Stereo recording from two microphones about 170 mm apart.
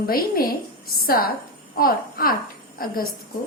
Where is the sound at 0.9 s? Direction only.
60° left (ahead or behind).